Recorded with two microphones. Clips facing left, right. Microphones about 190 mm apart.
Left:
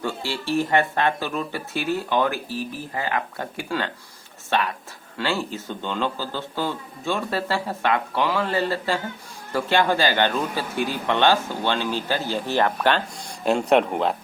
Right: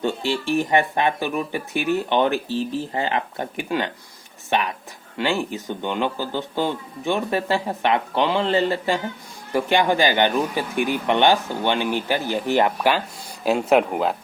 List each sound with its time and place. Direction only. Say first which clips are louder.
0.0 s speech: right 5 dB; 20° right (ahead or behind); by 14.2 s 5° right (ahead or behind)